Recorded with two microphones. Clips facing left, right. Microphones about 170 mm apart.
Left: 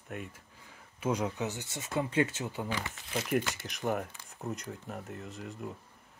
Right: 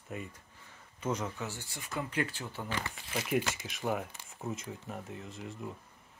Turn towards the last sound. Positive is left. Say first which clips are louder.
# left 1 dB
turn(degrees=0)  # may be behind; listen again after turning